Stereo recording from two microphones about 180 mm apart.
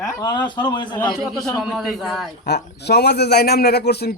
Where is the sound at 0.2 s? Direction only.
25° left (ahead or behind).